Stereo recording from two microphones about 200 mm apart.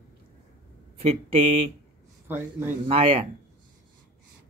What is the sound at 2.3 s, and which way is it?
Speech, 10° right (ahead or behind).